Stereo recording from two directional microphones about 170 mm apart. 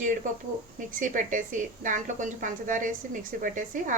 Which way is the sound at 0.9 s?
50° right (ahead or behind).